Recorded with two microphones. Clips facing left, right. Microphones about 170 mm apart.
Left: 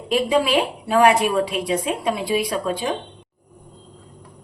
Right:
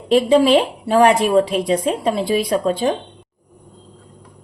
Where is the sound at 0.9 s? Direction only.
35° right (ahead or behind).